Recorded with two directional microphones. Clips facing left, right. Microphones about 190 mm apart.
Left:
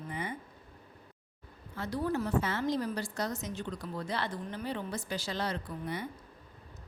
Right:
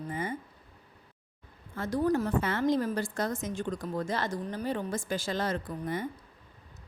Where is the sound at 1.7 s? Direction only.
50° right (ahead or behind).